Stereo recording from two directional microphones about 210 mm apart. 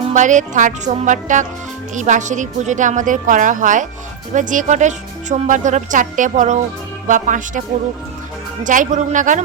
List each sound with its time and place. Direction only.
0.1 s a woman's voice: 35° right (ahead or behind)
8.6 s a woman's voice: 40° right (ahead or behind)